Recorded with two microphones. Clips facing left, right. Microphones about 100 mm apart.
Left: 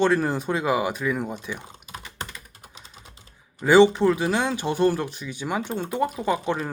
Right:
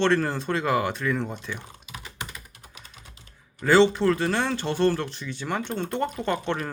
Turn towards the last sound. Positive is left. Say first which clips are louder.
# left 2 dB
turn(degrees=10)  # may be behind; listen again after turning